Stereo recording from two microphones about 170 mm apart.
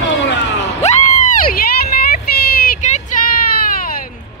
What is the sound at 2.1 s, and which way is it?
Child singing, 60° left (ahead or behind).